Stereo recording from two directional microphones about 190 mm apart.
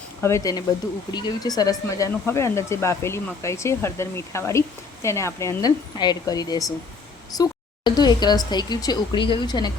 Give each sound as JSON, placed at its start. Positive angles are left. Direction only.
{"t": 0.2, "sound": "speech", "side_deg": 15}